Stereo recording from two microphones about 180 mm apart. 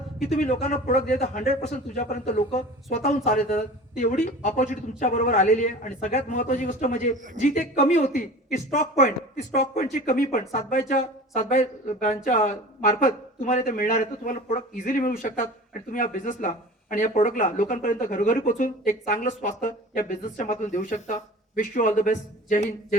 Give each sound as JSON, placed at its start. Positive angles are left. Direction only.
{"t": 0.3, "sound": "a man's voice", "side_deg": 40}